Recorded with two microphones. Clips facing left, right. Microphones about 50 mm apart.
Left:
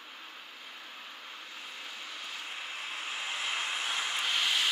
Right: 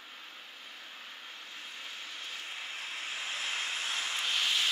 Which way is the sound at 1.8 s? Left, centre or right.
Left.